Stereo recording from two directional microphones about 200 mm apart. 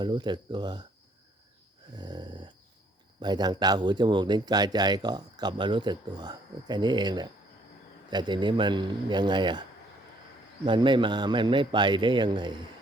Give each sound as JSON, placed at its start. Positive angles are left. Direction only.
{"t": 0.0, "sound": "a man's voice", "side_deg": -20}
{"t": 2.0, "sound": "snoring", "side_deg": -20}
{"t": 3.2, "sound": "a man's voice", "side_deg": -20}
{"t": 10.7, "sound": "a man's voice", "side_deg": -25}